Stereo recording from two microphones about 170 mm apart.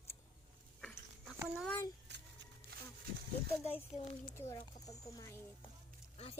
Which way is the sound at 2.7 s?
65° right (ahead or behind).